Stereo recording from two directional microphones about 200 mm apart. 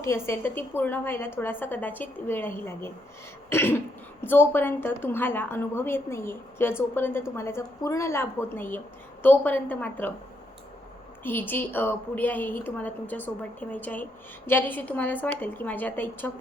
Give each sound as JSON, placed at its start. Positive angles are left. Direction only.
{"t": 0.0, "sound": "a woman's voice", "side_deg": 15}
{"t": 11.2, "sound": "a woman's voice", "side_deg": 10}